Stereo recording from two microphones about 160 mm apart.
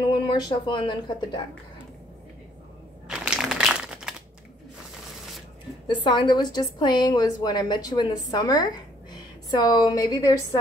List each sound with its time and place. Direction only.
0.0 s speech: 30° left (ahead or behind)
3.1 s crumpling: 5° right (ahead or behind)
5.9 s a woman's voice: 30° left (ahead or behind)